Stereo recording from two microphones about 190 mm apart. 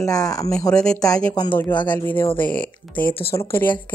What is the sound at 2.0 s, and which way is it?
Speech, 10° left (ahead or behind).